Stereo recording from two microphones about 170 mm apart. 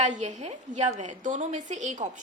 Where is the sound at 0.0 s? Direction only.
45° right (ahead or behind).